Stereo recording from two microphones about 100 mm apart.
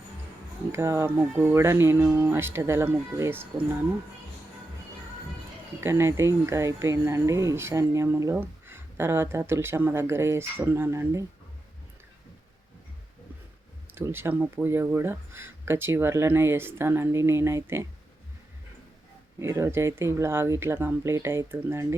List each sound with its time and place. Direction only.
0.7 s speech: 25° right (ahead or behind)
5.8 s speech: 25° right (ahead or behind)
13.9 s speech: 25° right (ahead or behind)
19.4 s speech: 30° right (ahead or behind)